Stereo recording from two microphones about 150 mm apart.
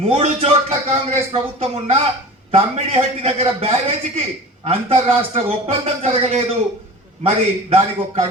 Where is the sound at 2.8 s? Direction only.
40° right (ahead or behind).